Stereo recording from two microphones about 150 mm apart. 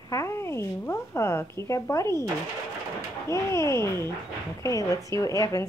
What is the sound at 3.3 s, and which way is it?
Speech, 20° left (ahead or behind).